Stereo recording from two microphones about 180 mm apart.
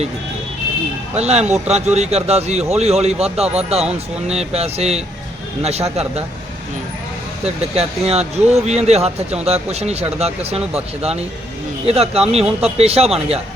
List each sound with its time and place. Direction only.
1.1 s speech: 35° right (ahead or behind)
7.4 s speech: 35° right (ahead or behind)